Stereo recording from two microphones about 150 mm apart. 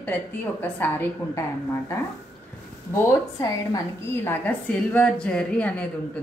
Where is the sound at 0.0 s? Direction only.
10° left (ahead or behind).